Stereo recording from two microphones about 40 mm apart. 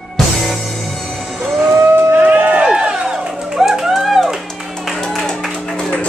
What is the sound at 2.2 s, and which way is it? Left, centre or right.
Run, right.